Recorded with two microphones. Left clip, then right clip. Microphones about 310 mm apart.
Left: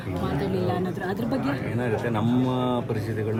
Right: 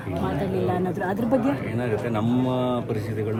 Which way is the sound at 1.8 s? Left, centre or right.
Centre.